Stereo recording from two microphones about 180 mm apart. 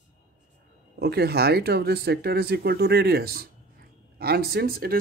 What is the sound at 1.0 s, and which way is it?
Speech, 60° right (ahead or behind).